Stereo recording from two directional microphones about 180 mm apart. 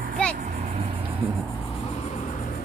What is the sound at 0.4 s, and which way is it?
Vehicle, 45° right (ahead or behind).